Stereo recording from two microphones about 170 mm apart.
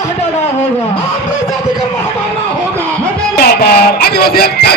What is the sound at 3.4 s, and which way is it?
Music, 70° left (ahead or behind).